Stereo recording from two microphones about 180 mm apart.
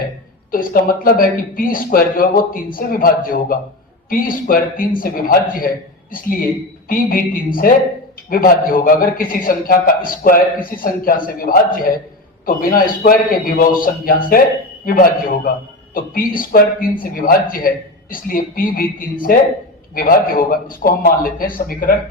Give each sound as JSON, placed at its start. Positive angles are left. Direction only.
{"t": 0.5, "sound": "a man's voice", "side_deg": 50}